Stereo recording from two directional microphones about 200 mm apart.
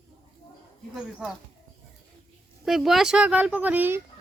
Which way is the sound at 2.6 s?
Centre (ahead or behind).